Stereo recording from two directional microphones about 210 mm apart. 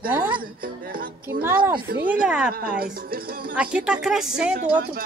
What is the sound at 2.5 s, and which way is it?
A woman's voice, 45° right (ahead or behind).